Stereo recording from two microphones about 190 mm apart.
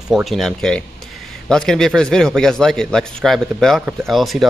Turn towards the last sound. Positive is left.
turn(degrees=0)  # may be behind; listen again after turning